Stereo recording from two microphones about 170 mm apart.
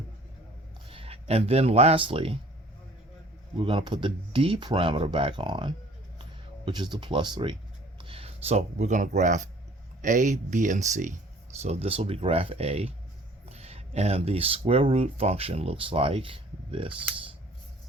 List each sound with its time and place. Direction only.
0.9 s speech: 35° right (ahead or behind)
3.6 s speech: 30° right (ahead or behind)